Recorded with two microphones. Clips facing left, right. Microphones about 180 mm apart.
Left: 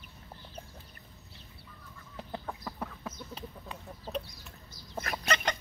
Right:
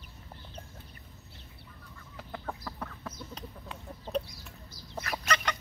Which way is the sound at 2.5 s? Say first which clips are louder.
Even; 10° left (ahead or behind).